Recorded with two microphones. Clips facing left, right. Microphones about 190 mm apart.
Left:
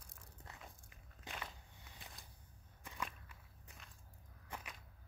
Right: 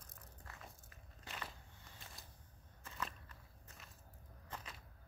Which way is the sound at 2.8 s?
15° left (ahead or behind).